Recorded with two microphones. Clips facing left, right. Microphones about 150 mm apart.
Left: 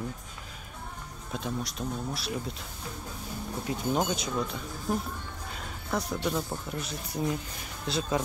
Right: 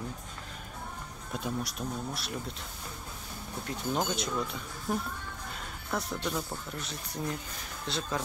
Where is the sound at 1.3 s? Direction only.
5° right (ahead or behind).